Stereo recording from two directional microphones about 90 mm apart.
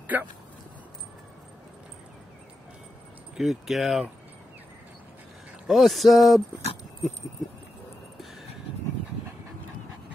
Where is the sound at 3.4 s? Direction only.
Centre (ahead or behind).